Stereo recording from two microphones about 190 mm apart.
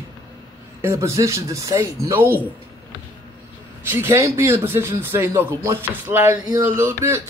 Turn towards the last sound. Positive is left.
turn(degrees=-15)  # may be behind; listen again after turning